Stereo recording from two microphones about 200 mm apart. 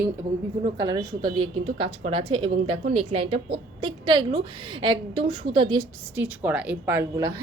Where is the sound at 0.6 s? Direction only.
20° right (ahead or behind).